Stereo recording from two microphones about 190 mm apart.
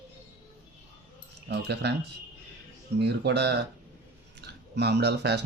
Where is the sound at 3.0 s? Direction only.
60° right (ahead or behind).